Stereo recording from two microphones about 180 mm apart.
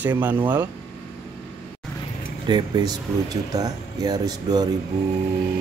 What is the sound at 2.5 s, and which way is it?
Speech, 20° right (ahead or behind).